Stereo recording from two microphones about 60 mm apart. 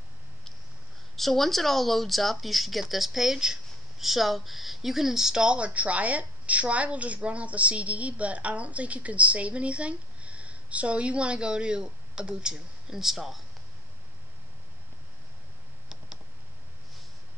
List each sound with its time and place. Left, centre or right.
1.1 s speech: centre